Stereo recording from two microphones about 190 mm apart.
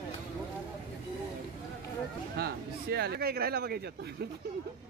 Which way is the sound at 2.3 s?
55° right (ahead or behind).